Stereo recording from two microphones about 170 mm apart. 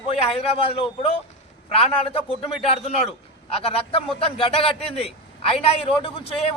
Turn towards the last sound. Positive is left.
turn(degrees=35)  # may be behind; listen again after turning